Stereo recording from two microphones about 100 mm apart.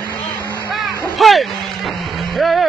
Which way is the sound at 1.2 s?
Centre (ahead or behind).